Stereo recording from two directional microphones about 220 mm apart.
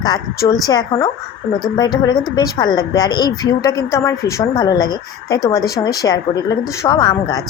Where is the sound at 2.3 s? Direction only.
20° left (ahead or behind).